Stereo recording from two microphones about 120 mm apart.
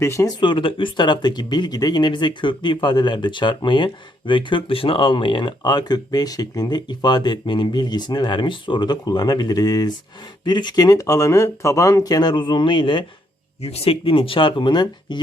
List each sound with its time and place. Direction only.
0.0 s speech: 25° left (ahead or behind)
0.3 s speech: 45° left (ahead or behind)
13.6 s speech: 60° left (ahead or behind); by 15.2 s 40° left (ahead or behind)